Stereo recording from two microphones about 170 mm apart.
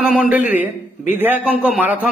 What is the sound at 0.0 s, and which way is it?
A man's voice, 5° right (ahead or behind).